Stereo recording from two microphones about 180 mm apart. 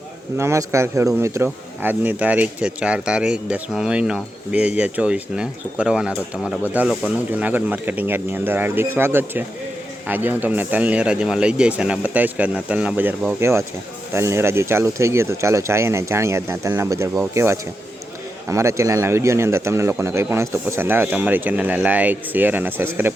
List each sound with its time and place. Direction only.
0.3 s speech: 15° right (ahead or behind)